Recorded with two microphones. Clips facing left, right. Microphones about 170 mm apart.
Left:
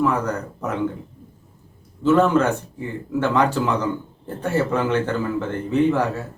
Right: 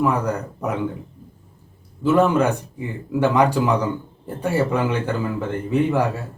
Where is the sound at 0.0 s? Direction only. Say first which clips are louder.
Even; 10° right (ahead or behind).